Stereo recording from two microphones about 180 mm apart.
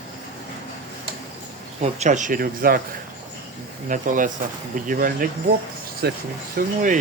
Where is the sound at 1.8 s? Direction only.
40° right (ahead or behind).